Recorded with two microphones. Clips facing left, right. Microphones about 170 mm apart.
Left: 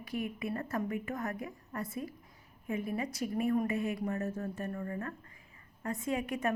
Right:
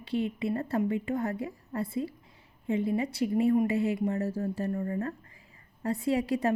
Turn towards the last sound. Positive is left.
turn(degrees=-35)  # may be behind; listen again after turning